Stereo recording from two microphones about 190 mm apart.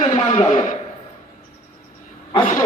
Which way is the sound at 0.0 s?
35° left (ahead or behind).